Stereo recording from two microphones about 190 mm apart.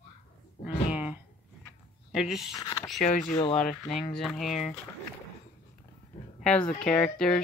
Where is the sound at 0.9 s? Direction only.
10° right (ahead or behind).